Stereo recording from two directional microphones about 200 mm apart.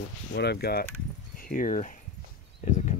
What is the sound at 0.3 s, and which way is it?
Speech, 55° left (ahead or behind).